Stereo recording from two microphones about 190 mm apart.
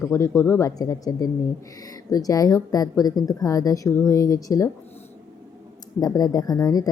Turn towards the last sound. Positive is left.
turn(degrees=20)  # may be behind; listen again after turning